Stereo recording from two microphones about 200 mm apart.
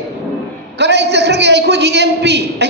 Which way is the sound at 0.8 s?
60° right (ahead or behind).